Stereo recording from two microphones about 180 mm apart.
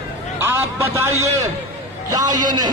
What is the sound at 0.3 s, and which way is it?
A man's voice, 15° right (ahead or behind).